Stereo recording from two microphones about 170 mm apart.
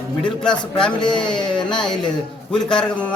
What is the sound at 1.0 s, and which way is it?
Speech, 25° left (ahead or behind).